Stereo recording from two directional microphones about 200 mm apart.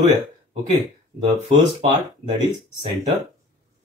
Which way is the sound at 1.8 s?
20° right (ahead or behind).